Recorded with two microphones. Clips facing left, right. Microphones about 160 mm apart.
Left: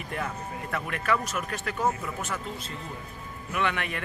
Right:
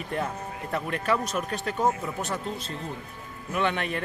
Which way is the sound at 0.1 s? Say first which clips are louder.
Right 2 dB; 30° right (ahead or behind).